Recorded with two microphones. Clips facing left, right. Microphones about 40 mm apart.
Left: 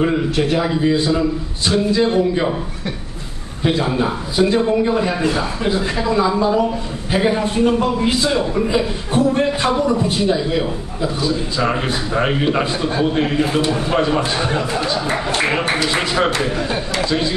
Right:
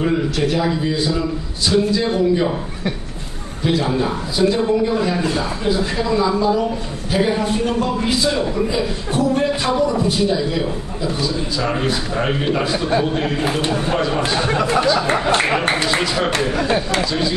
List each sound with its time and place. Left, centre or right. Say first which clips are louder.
0.0 s speech: left 1 dB; left
0.9 s speech: left 3 dB; left
3.6 s a man's voice: left 1 dB; left
15.0 s speech: right 3 dB; right
17.0 s speech: left 1 dB; left